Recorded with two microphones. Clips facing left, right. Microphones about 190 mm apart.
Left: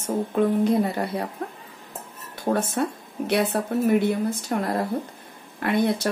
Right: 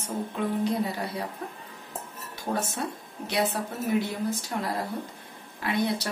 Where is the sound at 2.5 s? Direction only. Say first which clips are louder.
Left 6 dB; 55° left (ahead or behind).